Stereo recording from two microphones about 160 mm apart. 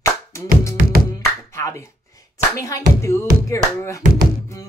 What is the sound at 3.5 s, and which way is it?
Speech, 20° left (ahead or behind).